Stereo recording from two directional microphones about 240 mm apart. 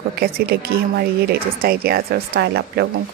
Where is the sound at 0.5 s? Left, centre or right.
Right.